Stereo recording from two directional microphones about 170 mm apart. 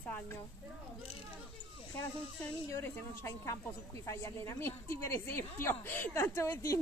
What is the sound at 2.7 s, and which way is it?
Speech, 15° left (ahead or behind).